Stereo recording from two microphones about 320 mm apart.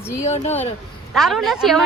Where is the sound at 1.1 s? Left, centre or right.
Centre.